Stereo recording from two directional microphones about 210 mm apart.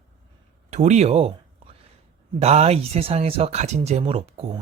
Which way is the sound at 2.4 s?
30° right (ahead or behind).